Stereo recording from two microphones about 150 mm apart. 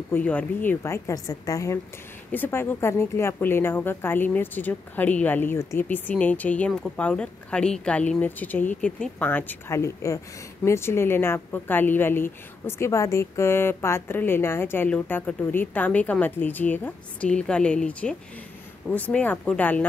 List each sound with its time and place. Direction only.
0.1 s a woman's voice: 10° left (ahead or behind)